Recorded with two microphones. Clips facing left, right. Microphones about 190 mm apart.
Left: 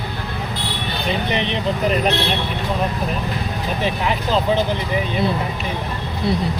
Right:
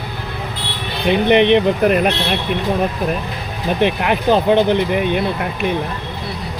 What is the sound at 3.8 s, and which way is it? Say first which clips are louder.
Speech: right 6 dB; 65° right (ahead or behind).